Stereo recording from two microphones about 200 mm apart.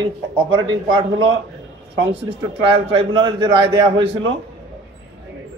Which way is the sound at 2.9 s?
25° right (ahead or behind).